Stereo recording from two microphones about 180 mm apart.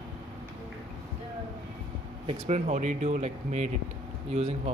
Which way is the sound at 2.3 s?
40° right (ahead or behind).